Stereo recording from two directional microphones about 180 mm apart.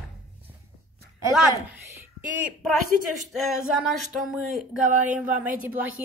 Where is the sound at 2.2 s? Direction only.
10° right (ahead or behind).